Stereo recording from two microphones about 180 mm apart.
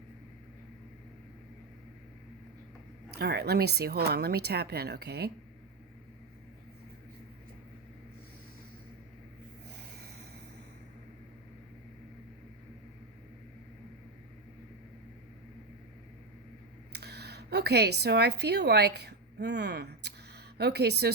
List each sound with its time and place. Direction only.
3.2 s speech: 65° right (ahead or behind)
16.9 s speech: 65° right (ahead or behind)